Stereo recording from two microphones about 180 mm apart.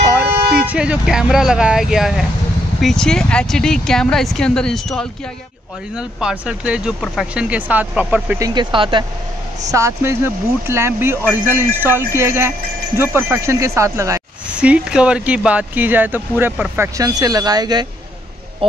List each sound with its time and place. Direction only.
0.1 s a sound: 10° right (ahead or behind)
0.7 s speech: 5° right (ahead or behind)
8.4 s speech: 20° right (ahead or behind)
9.7 s speech: 15° right (ahead or behind)